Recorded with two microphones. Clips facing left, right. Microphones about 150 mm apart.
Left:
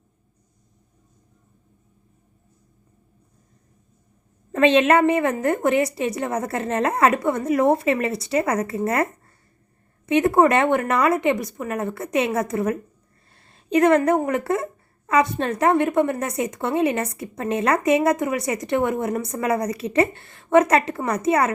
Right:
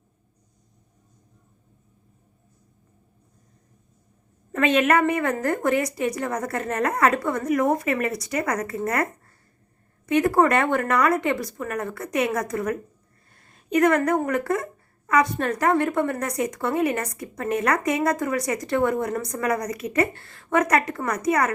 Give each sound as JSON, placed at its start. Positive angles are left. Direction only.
{"t": 4.5, "sound": "speech", "side_deg": 25}
{"t": 10.1, "sound": "speech", "side_deg": 25}